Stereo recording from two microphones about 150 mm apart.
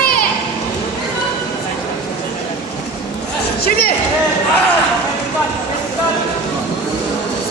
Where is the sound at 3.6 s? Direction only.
90° left.